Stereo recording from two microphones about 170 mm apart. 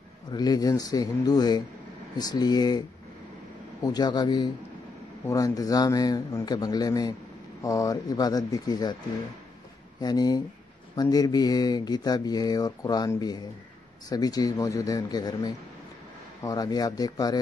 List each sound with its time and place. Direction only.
0.3 s speech: 25° left (ahead or behind)
3.8 s speech: 25° left (ahead or behind)
9.9 s speech: 25° left (ahead or behind)